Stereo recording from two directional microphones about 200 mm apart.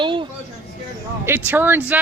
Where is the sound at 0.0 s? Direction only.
25° right (ahead or behind).